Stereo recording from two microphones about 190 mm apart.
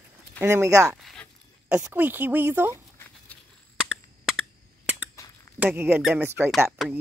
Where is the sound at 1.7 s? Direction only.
10° right (ahead or behind).